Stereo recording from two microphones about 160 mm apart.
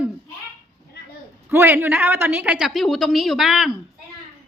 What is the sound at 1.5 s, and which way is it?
A woman's voice, 15° right (ahead or behind).